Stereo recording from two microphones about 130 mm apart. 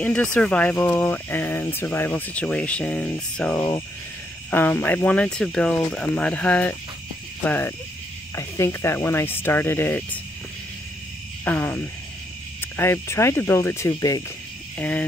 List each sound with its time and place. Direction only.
0.0 s speech: 10° left (ahead or behind)
11.4 s speech: 10° left (ahead or behind)
14.8 s speech: 10° left (ahead or behind)